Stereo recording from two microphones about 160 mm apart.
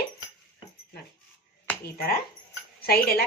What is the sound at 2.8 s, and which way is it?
Speech, 80° left.